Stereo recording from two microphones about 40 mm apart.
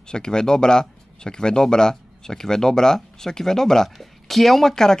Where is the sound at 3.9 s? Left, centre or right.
Centre.